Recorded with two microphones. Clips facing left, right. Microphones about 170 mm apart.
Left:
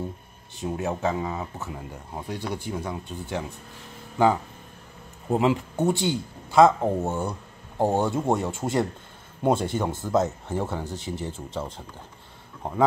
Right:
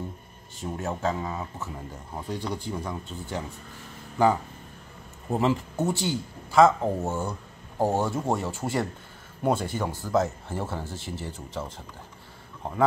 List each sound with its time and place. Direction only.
0.6 s speech: 15° left (ahead or behind)
5.3 s speech: 15° left (ahead or behind)